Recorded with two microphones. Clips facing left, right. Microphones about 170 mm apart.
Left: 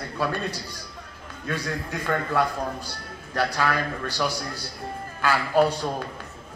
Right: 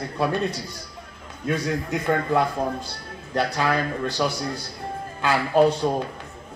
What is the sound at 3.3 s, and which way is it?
A man's voice, 25° right (ahead or behind).